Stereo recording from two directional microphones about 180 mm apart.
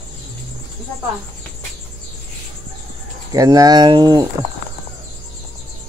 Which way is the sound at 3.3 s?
20° right (ahead or behind).